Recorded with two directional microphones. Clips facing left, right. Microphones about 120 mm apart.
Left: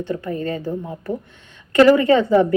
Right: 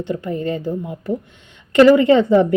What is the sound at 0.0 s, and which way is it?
Speech, 20° right (ahead or behind).